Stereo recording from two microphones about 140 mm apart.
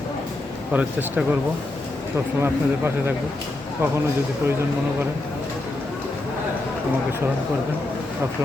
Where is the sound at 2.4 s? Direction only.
15° right (ahead or behind).